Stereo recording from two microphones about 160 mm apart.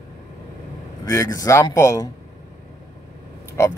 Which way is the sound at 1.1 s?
20° left (ahead or behind).